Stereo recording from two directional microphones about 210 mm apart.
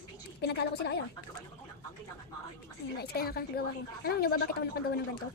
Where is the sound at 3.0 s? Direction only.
45° left (ahead or behind).